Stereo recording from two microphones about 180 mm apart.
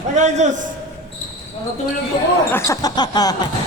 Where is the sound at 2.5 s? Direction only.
20° left (ahead or behind).